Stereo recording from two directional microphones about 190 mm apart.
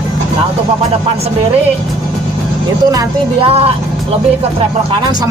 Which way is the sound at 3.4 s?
30° right (ahead or behind).